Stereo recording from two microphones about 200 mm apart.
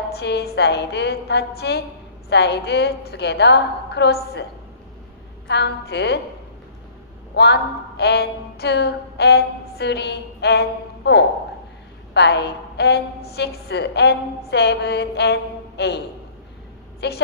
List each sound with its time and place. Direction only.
0.1 s a woman's voice: 55° left (ahead or behind)
5.5 s a woman's voice: 55° left (ahead or behind)
7.3 s a woman's voice: 55° left (ahead or behind)
17.0 s a woman's voice: 55° left (ahead or behind)